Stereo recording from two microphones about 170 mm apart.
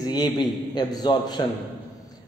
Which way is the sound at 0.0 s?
25° left (ahead or behind).